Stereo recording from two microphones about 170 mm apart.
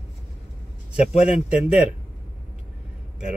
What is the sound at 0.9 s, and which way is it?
Speech, 40° left (ahead or behind).